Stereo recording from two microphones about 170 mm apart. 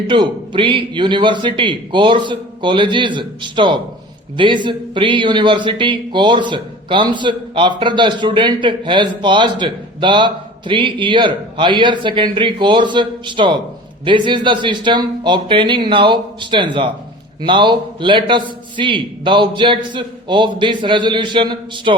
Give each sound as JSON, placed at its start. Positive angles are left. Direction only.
{"t": 0.1, "sound": "speech", "side_deg": -30}